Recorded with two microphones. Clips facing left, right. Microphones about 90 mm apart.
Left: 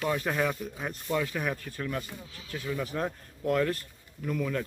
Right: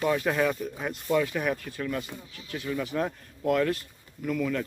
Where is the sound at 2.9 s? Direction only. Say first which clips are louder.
Right 3 dB; 5° left (ahead or behind).